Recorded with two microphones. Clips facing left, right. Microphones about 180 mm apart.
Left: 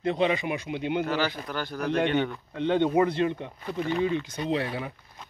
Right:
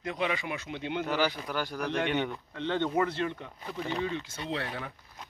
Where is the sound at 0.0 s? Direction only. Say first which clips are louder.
Left 7 dB; 30° left (ahead or behind).